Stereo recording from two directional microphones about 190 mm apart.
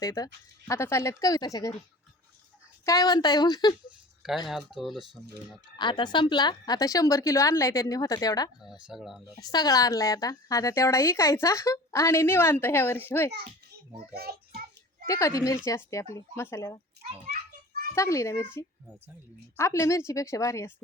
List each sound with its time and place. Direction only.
0.0 s a woman's voice: 20° left (ahead or behind)
2.8 s a woman's voice: 20° left (ahead or behind)
4.2 s speech: centre (ahead or behind)
5.7 s a woman's voice: 25° left (ahead or behind)
8.9 s speech: centre (ahead or behind)
9.4 s a woman's voice: 20° left (ahead or behind)
14.2 s a child's voice: 55° right (ahead or behind)
15.0 s a woman's voice: 15° left (ahead or behind)
17.9 s a woman's voice: 15° left (ahead or behind)
19.5 s a woman's voice: 15° left (ahead or behind)